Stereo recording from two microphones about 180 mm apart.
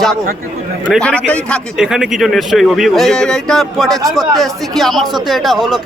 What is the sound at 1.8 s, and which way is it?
A man's voice, 5° right (ahead or behind).